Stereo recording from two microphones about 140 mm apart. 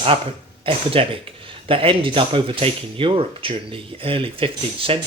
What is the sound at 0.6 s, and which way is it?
Speech, 40° right (ahead or behind).